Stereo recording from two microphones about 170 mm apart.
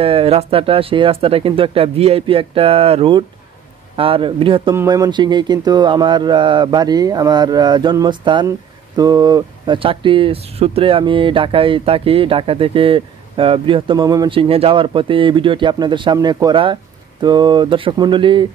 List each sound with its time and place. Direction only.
0.0 s speech: 35° right (ahead or behind)